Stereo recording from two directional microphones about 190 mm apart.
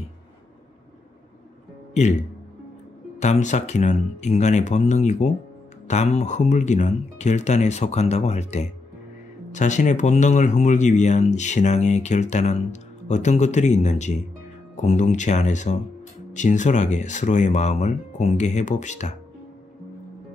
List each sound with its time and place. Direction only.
2.0 s speech: 35° left (ahead or behind)